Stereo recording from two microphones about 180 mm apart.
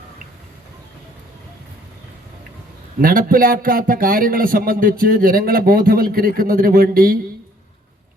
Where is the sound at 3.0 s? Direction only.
50° right (ahead or behind).